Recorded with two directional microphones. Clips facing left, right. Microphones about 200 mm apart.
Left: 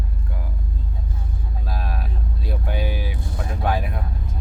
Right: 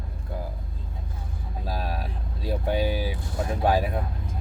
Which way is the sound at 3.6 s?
35° right (ahead or behind).